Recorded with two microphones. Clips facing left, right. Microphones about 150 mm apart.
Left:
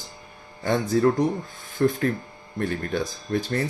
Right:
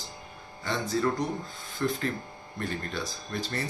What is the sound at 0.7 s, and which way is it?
Speech, 50° left (ahead or behind).